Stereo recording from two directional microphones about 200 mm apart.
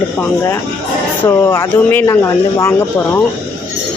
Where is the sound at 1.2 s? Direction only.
15° left (ahead or behind).